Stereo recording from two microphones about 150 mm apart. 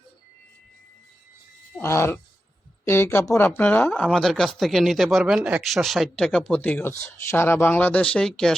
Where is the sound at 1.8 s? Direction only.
15° left (ahead or behind).